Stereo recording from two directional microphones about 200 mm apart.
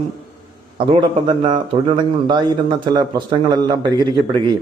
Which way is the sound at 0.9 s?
25° right (ahead or behind).